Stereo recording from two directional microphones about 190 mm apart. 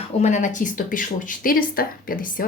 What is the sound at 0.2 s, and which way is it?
A woman's voice, 40° left (ahead or behind).